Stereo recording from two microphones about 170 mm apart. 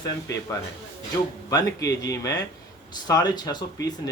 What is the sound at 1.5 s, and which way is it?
Speech, 20° left (ahead or behind).